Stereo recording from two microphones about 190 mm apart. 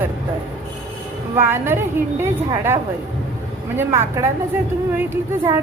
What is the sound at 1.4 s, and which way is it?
A woman's voice, 10° right (ahead or behind).